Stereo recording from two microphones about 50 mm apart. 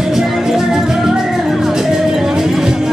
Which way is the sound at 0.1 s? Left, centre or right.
Centre.